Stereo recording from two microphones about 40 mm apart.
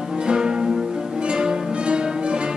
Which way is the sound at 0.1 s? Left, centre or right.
Centre.